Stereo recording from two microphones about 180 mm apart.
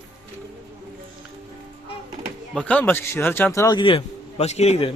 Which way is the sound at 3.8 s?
30° left (ahead or behind).